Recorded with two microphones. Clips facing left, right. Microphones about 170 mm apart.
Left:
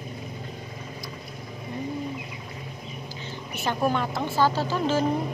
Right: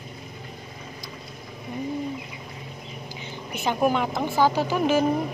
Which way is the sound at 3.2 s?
15° right (ahead or behind).